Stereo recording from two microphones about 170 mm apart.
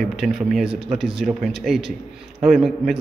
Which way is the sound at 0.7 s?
35° right (ahead or behind).